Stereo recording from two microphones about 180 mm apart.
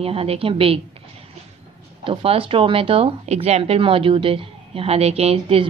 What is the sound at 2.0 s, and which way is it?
Speech, 30° right (ahead or behind).